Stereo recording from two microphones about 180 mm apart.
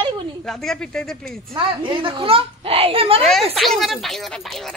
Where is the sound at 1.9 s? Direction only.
30° right (ahead or behind).